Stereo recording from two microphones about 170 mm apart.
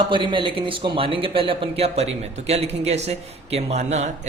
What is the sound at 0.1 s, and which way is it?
Speech, 30° right (ahead or behind).